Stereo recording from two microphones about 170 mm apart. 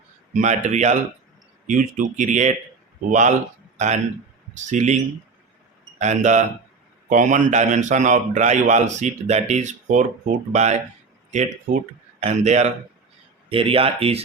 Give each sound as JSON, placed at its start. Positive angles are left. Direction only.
{"t": 0.3, "sound": "a man's voice", "side_deg": -45}
{"t": 6.0, "sound": "a man's voice", "side_deg": -45}